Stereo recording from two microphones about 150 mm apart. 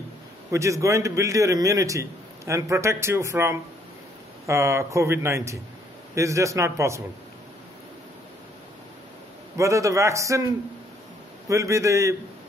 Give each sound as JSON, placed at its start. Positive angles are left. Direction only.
{"t": 0.5, "sound": "a man's voice", "side_deg": -20}
{"t": 9.6, "sound": "a man's voice", "side_deg": -20}
{"t": 11.4, "sound": "a man's voice", "side_deg": -20}